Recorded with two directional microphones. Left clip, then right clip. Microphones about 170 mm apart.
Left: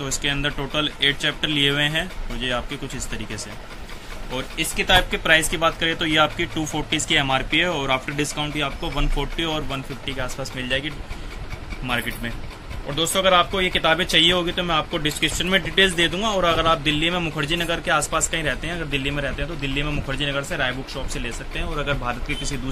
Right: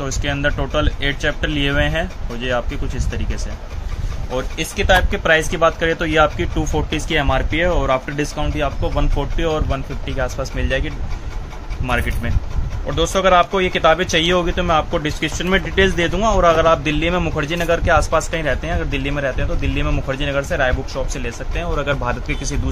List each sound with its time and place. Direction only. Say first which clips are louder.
0.0 s speech: right 3 dB; 45° right (ahead or behind)
4.3 s speech: right 3 dB; 50° right (ahead or behind)
11.9 s speech: right 4 dB; 45° right (ahead or behind)